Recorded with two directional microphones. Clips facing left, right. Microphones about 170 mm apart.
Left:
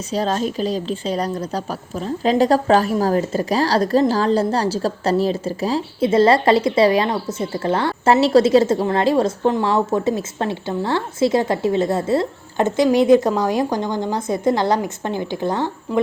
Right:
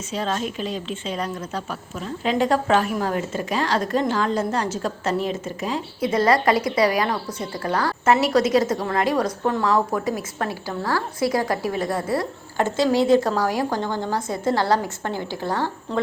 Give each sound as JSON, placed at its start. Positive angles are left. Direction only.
{"t": 0.1, "sound": "a woman's voice", "side_deg": 35}